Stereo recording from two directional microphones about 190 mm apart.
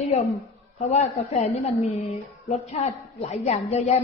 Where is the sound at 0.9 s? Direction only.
35° left (ahead or behind).